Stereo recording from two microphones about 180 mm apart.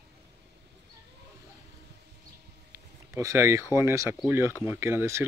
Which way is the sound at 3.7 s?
15° right (ahead or behind).